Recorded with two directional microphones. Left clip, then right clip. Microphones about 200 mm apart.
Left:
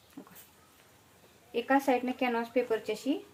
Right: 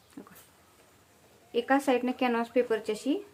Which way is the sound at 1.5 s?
20° right (ahead or behind).